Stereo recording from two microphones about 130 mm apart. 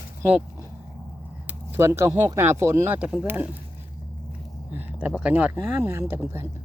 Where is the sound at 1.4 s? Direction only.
15° right (ahead or behind).